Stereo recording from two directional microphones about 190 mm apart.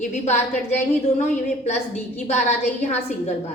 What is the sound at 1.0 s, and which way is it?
A woman's voice, 35° left (ahead or behind).